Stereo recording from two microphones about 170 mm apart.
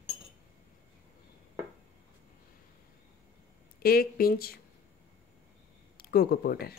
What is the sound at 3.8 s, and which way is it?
Speech, 60° left (ahead or behind).